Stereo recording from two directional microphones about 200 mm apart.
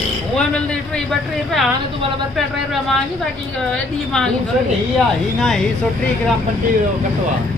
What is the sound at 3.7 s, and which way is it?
Speech, 5° left (ahead or behind).